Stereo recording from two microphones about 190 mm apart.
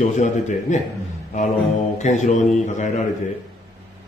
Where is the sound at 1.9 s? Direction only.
40° left (ahead or behind).